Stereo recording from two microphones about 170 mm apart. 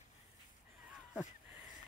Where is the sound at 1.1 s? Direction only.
10° right (ahead or behind).